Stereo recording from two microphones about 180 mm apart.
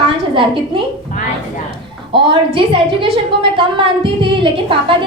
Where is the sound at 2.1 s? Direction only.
30° right (ahead or behind).